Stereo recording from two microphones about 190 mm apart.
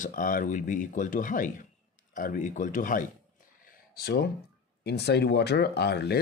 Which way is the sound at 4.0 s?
55° left (ahead or behind).